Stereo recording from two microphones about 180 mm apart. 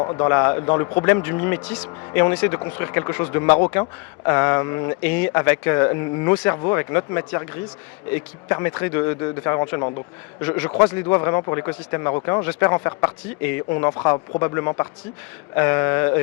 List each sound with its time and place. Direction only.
0.0 s a man's voice: 25° left (ahead or behind)